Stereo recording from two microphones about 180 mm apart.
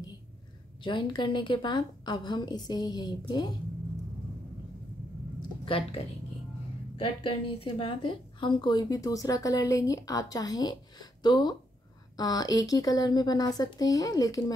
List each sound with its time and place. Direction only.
0.8 s a woman's voice: 25° left (ahead or behind)
5.7 s speech: 30° left (ahead or behind)
7.0 s a woman's voice: 30° left (ahead or behind)